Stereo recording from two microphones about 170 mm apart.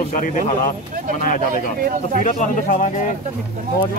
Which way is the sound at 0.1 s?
45° left (ahead or behind).